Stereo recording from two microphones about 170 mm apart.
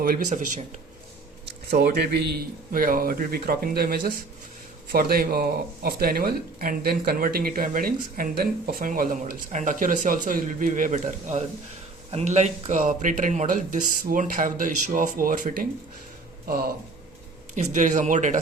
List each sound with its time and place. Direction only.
0.0 s speech: 55° right (ahead or behind)
1.7 s speech: 70° right (ahead or behind); by 15.6 s 55° right (ahead or behind)
17.5 s speech: 50° right (ahead or behind)